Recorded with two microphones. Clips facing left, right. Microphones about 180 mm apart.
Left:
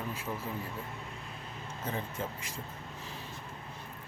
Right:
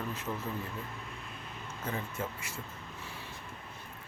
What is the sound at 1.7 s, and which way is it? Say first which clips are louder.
Speech: even; 30° left (ahead or behind).